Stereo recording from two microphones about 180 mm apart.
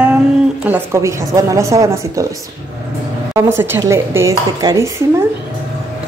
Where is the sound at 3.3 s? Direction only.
15° right (ahead or behind).